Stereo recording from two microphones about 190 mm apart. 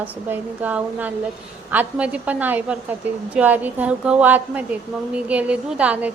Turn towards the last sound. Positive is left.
turn(degrees=-5)  # may be behind; listen again after turning